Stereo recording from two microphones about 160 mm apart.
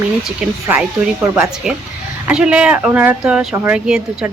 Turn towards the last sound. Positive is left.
turn(degrees=-5)  # may be behind; listen again after turning